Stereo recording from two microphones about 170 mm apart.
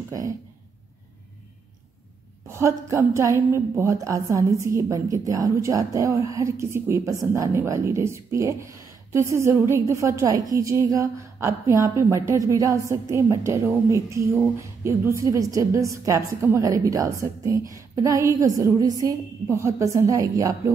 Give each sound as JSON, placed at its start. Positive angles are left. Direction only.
{"t": 2.4, "sound": "a woman's voice", "side_deg": -15}